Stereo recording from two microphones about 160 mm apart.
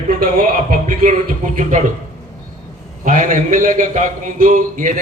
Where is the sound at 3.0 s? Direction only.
55° right (ahead or behind).